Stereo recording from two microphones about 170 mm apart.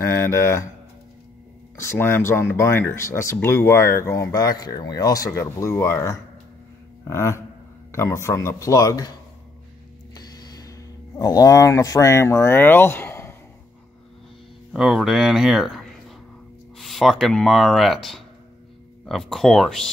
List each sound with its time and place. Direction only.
0.0 s speech: 15° left (ahead or behind)
1.8 s speech: 15° left (ahead or behind)
10.1 s a sound: 25° left (ahead or behind)
11.1 s speech: 20° left (ahead or behind)
14.7 s speech: centre (ahead or behind)